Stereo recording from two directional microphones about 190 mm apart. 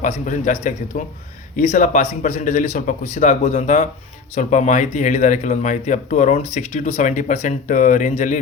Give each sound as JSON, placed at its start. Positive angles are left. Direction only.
{"t": 0.0, "sound": "speech", "side_deg": 40}